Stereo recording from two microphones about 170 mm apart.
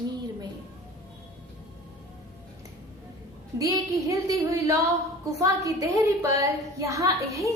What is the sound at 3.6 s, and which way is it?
A woman's voice, 20° right (ahead or behind).